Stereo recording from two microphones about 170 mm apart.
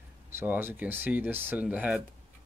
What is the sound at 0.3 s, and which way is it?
Speech, 15° right (ahead or behind).